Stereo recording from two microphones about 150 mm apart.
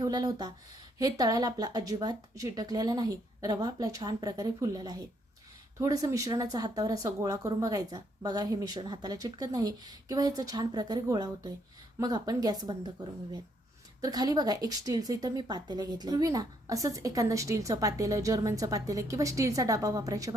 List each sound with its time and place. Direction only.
0.0 s speech: 25° right (ahead or behind)
14.0 s speech: 25° right (ahead or behind)